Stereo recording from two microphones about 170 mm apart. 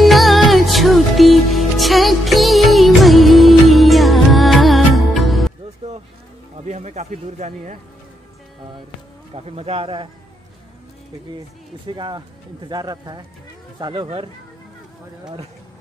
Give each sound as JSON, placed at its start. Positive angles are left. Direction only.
{"t": 0.0, "sound": "music", "side_deg": 0}
{"t": 6.6, "sound": "a man's voice", "side_deg": -40}
{"t": 9.3, "sound": "speech", "side_deg": -35}
{"t": 11.9, "sound": "speech", "side_deg": -25}